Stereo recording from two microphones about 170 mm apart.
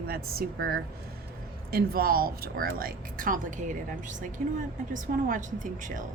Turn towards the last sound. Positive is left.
turn(degrees=-50)  # may be behind; listen again after turning